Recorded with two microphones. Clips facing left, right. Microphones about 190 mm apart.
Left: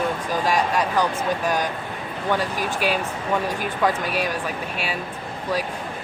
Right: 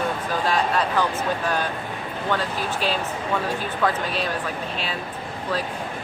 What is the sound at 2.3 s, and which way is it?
Speech, 10° left (ahead or behind).